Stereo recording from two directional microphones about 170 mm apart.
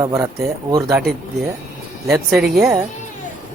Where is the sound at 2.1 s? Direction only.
5° right (ahead or behind).